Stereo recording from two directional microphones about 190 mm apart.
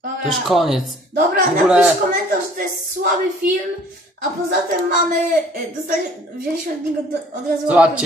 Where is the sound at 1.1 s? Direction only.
45° right (ahead or behind).